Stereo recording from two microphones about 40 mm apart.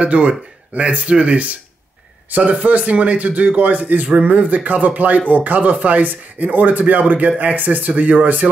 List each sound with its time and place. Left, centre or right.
0.0 s a man's voice: right